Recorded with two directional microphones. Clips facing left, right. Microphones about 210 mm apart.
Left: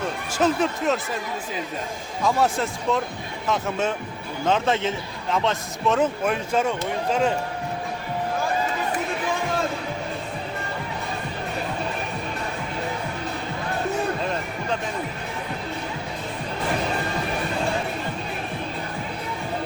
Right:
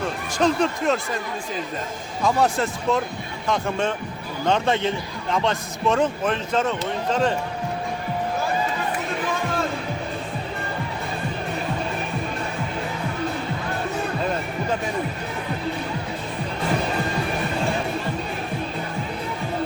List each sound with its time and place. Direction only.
0.3 s a man's voice: 5° left (ahead or behind)
2.2 s a man's voice: centre (ahead or behind)